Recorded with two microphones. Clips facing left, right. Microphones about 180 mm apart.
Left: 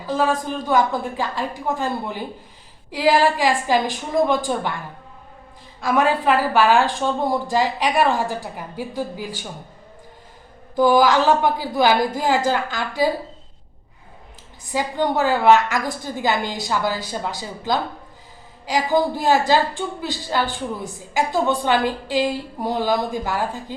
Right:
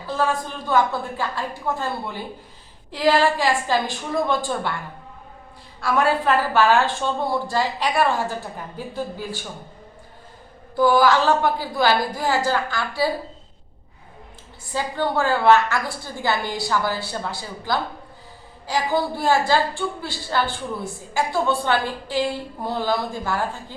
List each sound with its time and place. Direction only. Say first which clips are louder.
0.0 s a woman's voice: left 3 dB; 15° left (ahead or behind)
5.8 s a woman's voice: left 1 dB; 15° left (ahead or behind)
10.8 s a woman's voice: left 1 dB; 15° left (ahead or behind)
14.7 s a woman's voice: left 2 dB; 15° left (ahead or behind)